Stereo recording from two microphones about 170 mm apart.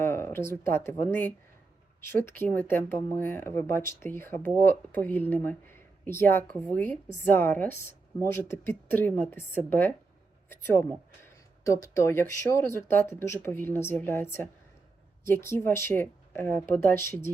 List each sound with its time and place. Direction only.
0.0 s speech: 15° left (ahead or behind)
11.6 s speech: 15° left (ahead or behind)